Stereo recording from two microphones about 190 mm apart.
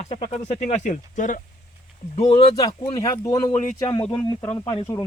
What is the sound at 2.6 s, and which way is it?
A man's voice, 20° left (ahead or behind).